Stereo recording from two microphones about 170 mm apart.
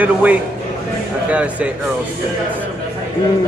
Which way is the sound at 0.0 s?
10° right (ahead or behind).